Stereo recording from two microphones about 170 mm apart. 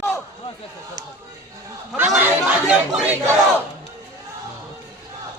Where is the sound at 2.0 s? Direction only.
5° right (ahead or behind).